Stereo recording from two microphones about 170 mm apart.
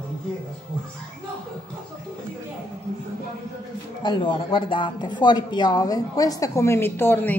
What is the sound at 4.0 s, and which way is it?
Speech, 25° left (ahead or behind).